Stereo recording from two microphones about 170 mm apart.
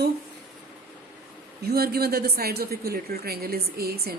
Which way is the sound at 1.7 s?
65° right (ahead or behind).